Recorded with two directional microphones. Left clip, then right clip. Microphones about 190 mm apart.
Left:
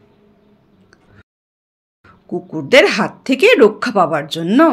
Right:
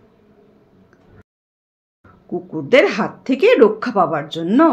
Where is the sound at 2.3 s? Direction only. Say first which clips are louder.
Left 3 dB; 40° left (ahead or behind).